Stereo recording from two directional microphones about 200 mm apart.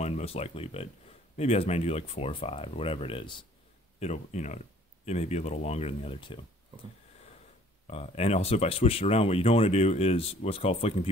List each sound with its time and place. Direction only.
0.0 s speech: 30° left (ahead or behind)
7.8 s speech: 30° left (ahead or behind)